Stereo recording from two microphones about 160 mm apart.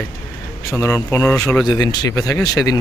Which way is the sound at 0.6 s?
20° left (ahead or behind).